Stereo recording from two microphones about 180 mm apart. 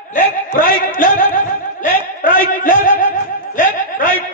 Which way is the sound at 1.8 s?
50° left (ahead or behind).